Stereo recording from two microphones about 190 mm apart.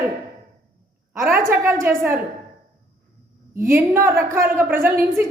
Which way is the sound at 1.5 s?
15° right (ahead or behind).